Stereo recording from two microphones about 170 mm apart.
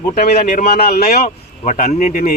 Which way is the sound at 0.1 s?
45° left (ahead or behind).